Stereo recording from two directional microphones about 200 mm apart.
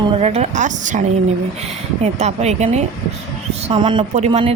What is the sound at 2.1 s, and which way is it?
Speech, 35° right (ahead or behind).